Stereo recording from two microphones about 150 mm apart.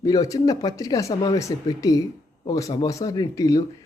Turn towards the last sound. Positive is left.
turn(degrees=25)  # may be behind; listen again after turning